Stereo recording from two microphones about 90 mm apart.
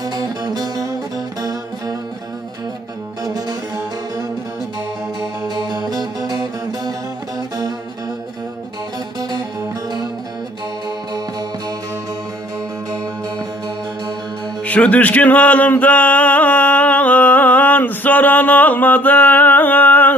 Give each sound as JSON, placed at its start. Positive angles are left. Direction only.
{"t": 0.0, "sound": "music", "side_deg": -45}
{"t": 5.5, "sound": "music", "side_deg": -55}
{"t": 14.6, "sound": "male singing", "side_deg": 15}